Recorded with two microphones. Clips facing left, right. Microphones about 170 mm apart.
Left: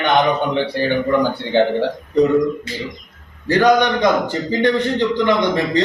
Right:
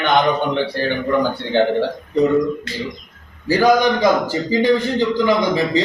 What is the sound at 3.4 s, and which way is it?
A man's voice, 5° right (ahead or behind).